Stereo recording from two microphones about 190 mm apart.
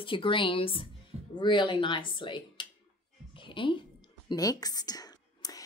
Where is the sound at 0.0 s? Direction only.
25° left (ahead or behind).